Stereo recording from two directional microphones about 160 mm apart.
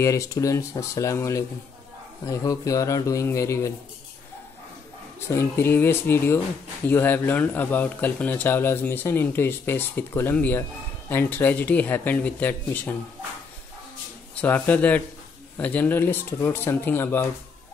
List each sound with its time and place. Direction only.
0.0 s a man's voice: 20° left (ahead or behind)
5.3 s speech: 15° left (ahead or behind)
14.3 s speech: 10° left (ahead or behind)